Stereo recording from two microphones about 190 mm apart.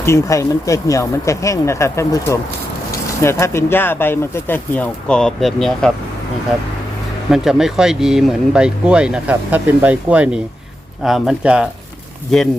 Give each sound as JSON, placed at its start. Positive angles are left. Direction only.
{"t": 0.0, "sound": "speech", "side_deg": 15}
{"t": 7.3, "sound": "speech", "side_deg": 0}